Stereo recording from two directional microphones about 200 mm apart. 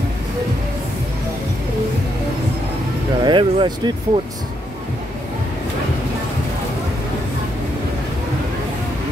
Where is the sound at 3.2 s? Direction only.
25° right (ahead or behind).